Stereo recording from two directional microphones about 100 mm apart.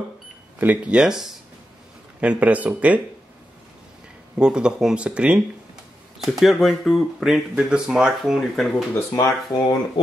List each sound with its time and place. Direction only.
0.6 s speech: 15° right (ahead or behind)
4.4 s speech: 10° right (ahead or behind)
8.9 s speech: 30° left (ahead or behind)